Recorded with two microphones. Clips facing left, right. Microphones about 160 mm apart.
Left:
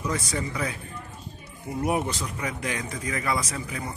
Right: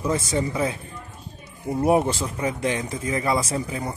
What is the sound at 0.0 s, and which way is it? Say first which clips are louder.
Speech: right 5 dB; 25° right (ahead or behind).